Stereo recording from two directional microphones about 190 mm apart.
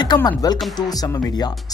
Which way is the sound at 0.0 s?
20° left (ahead or behind).